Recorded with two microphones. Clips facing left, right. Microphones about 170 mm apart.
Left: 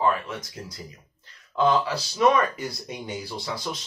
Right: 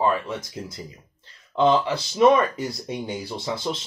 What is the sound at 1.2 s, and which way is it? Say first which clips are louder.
Speech: right 3 dB; 25° right (ahead or behind).